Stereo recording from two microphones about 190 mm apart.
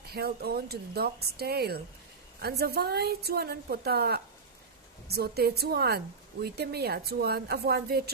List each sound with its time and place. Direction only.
0.0 s speech: 55° right (ahead or behind)